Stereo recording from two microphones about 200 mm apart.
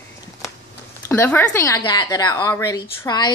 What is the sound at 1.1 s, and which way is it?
A woman's voice, 10° left (ahead or behind).